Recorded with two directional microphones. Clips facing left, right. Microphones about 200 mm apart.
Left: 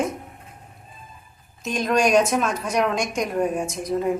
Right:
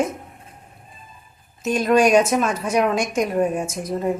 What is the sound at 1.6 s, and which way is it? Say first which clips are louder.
A woman's voice: right 4 dB; 5° right (ahead or behind).